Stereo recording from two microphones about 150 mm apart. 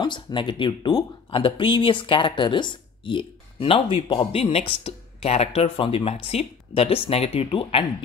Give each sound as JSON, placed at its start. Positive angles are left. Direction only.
{"t": 0.0, "sound": "speech", "side_deg": 30}